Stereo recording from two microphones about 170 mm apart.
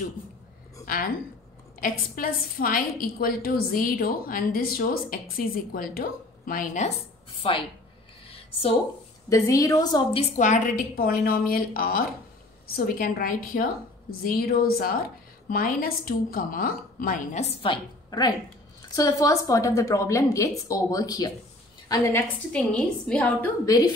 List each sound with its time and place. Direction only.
0.8 s a woman's voice: 55° left (ahead or behind)
7.4 s a woman's voice: 35° left (ahead or behind)
9.3 s a woman's voice: 20° left (ahead or behind)
10.3 s a woman's voice: 45° left (ahead or behind); by 22.2 s 20° left (ahead or behind)
22.5 s a woman's voice: 5° left (ahead or behind)
23.6 s a woman's voice: 20° left (ahead or behind)